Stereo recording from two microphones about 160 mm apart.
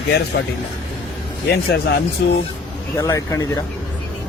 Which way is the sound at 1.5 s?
90° left.